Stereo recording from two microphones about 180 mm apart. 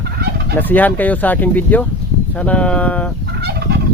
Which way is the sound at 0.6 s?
10° left (ahead or behind).